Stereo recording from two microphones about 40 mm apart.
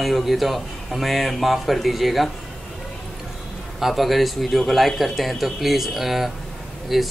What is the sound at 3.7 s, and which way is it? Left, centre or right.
A man's voice, centre.